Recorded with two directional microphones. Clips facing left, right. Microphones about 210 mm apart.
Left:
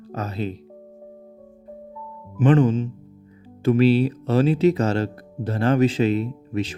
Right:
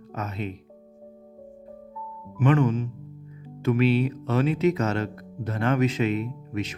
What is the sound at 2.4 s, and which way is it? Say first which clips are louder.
Speech: left 4 dB; 30° left (ahead or behind).